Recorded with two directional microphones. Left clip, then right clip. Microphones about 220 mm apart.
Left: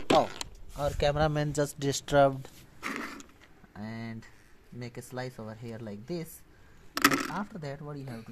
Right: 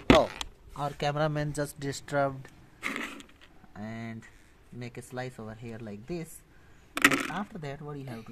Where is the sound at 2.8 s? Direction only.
5° right (ahead or behind).